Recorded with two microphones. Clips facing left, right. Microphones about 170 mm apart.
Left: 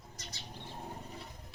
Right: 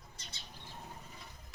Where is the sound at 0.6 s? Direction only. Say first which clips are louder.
Left 6 dB; 35° left (ahead or behind).